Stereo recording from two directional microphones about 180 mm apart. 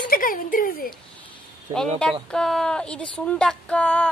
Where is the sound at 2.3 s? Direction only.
5° left (ahead or behind).